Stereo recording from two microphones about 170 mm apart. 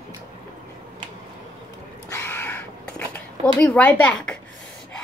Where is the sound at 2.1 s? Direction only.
15° left (ahead or behind).